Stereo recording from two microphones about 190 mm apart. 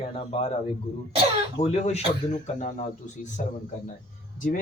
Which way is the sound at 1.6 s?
35° left (ahead or behind).